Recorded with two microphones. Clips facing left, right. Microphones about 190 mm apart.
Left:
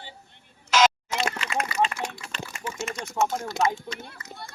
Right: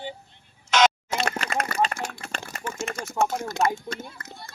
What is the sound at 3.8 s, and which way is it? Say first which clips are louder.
Speech: right 3 dB; 50° right (ahead or behind).